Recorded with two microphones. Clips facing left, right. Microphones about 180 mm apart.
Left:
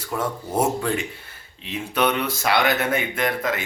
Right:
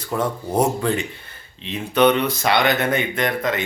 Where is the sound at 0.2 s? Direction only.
5° left (ahead or behind).